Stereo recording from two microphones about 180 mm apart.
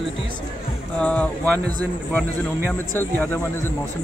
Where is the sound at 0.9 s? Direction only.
5° left (ahead or behind).